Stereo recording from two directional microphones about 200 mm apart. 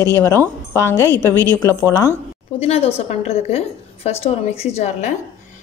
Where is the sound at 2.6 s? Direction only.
30° left (ahead or behind).